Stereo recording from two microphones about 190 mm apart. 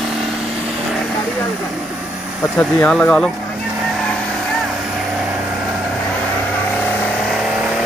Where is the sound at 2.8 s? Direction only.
5° left (ahead or behind).